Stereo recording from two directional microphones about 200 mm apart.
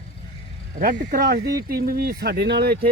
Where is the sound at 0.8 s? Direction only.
50° right (ahead or behind).